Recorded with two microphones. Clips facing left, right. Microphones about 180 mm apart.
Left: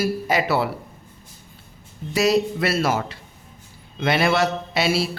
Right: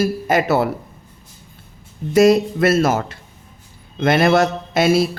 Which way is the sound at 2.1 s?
50° right (ahead or behind).